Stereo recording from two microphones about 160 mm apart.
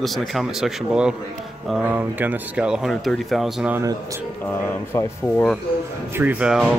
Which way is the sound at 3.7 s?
20° right (ahead or behind).